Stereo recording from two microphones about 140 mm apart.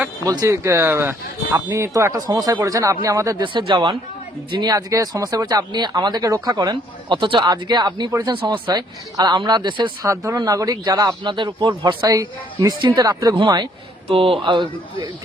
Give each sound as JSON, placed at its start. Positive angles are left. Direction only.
{"t": 0.3, "sound": "speech", "side_deg": -25}
{"t": 3.4, "sound": "speech", "side_deg": -35}
{"t": 10.1, "sound": "speech", "side_deg": -25}